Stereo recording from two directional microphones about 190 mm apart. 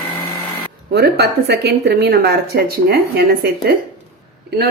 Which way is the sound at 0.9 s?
60° right (ahead or behind).